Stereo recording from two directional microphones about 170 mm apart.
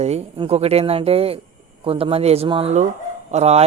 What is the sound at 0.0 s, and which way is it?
A man's voice, 40° right (ahead or behind).